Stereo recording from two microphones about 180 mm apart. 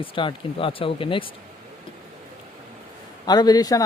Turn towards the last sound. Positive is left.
turn(degrees=20)  # may be behind; listen again after turning